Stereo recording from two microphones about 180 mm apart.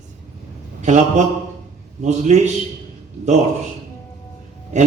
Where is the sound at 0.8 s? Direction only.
40° right (ahead or behind).